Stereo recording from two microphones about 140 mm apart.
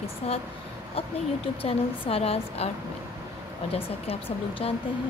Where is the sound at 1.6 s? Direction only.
45° left (ahead or behind).